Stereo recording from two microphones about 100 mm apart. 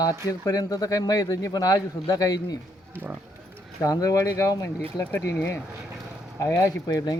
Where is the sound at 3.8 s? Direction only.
35° left (ahead or behind).